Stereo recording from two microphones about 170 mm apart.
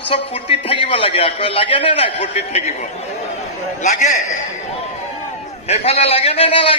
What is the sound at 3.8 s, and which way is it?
Speech, 45° left (ahead or behind).